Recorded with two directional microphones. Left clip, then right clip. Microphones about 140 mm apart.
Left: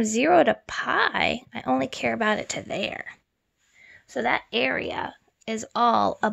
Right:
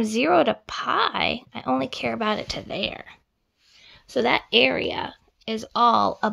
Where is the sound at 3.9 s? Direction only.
30° right (ahead or behind).